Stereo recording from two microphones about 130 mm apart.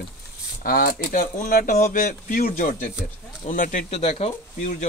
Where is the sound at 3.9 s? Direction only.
50° left (ahead or behind).